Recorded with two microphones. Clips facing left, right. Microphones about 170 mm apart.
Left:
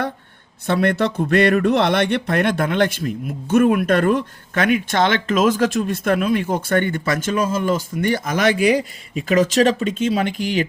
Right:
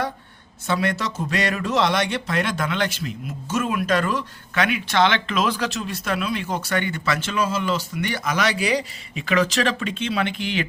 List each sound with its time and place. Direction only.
0.7 s speech: 55° left (ahead or behind)